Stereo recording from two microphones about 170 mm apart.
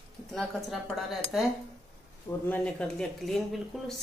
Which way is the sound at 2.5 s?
5° left (ahead or behind).